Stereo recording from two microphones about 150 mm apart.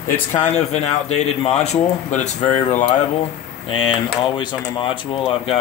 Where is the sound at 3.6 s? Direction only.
35° left (ahead or behind).